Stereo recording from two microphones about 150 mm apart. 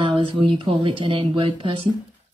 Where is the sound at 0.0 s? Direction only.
35° right (ahead or behind).